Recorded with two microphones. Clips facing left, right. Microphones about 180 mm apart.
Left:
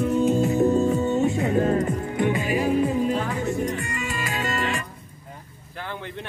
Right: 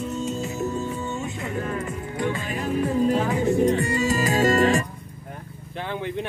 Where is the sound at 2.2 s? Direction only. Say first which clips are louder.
Left 3 dB; 15° left (ahead or behind).